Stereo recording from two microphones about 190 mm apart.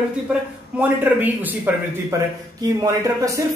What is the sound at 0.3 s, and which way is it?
Speech, 10° right (ahead or behind).